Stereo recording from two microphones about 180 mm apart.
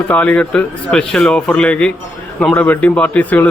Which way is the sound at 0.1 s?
10° left (ahead or behind).